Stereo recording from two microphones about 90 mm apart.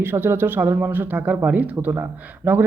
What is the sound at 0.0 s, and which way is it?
Speech, 25° right (ahead or behind).